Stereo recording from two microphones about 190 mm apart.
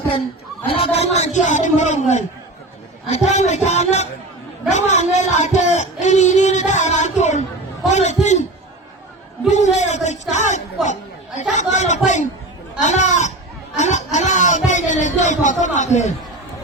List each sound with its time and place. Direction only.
0.7 s a man's voice: 30° left (ahead or behind)
9.5 s a man's voice: 35° left (ahead or behind)
13.7 s a sound: 40° left (ahead or behind)